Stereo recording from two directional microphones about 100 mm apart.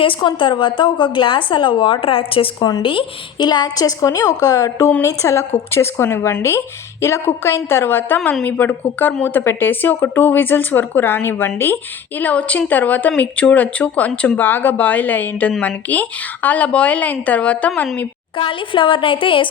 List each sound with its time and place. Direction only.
0.0 s a woman's voice: 55° left (ahead or behind)
2.6 s a woman's voice: 40° left (ahead or behind)
2.8 s a woman's voice: 60° left (ahead or behind); by 17.8 s 15° left (ahead or behind)
18.3 s a woman's voice: 60° left (ahead or behind)